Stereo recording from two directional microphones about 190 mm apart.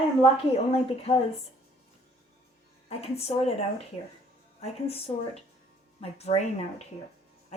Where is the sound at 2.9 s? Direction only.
30° left (ahead or behind).